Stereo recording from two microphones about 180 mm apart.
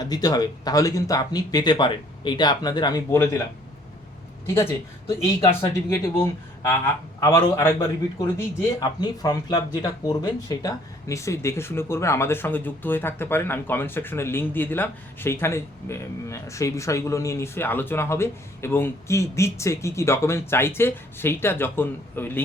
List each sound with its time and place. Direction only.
0.0 s speech: 20° left (ahead or behind)
4.5 s speech: 15° left (ahead or behind)